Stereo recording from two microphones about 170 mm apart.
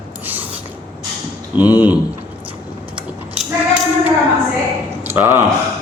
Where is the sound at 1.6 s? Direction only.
10° right (ahead or behind).